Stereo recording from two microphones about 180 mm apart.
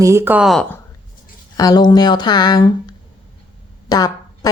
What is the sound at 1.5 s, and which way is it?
Speech, 20° left (ahead or behind).